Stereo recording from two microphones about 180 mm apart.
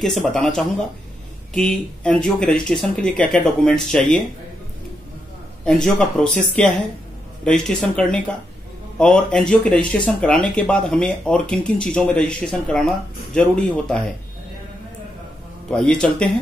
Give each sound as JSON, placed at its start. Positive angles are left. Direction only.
{"t": 0.0, "sound": "speech", "side_deg": 0}
{"t": 5.7, "sound": "speech", "side_deg": 5}
{"t": 15.7, "sound": "speech", "side_deg": 5}